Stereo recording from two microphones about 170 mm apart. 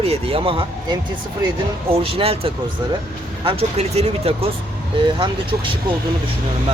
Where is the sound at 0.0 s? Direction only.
35° right (ahead or behind).